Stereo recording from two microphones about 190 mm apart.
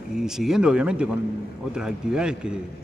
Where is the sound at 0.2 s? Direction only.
5° right (ahead or behind).